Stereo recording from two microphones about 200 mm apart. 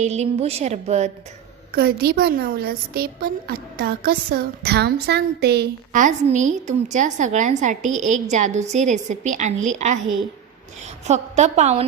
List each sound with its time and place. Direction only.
0.0 s a woman's voice: 30° right (ahead or behind)
1.7 s a woman's voice: 50° right (ahead or behind)
5.9 s a woman's voice: 40° right (ahead or behind)